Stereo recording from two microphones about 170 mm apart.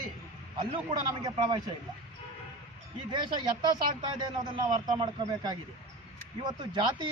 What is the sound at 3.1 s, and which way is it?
Speech, 25° right (ahead or behind).